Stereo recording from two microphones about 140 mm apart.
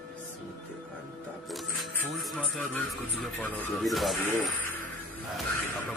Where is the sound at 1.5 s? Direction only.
Centre (ahead or behind).